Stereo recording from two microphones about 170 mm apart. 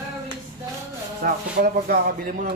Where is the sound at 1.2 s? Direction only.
60° right (ahead or behind).